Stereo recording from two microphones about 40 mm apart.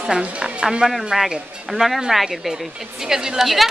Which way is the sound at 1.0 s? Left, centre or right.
Centre.